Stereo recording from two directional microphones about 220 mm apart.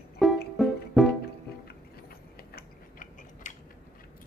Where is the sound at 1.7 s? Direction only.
45° left (ahead or behind).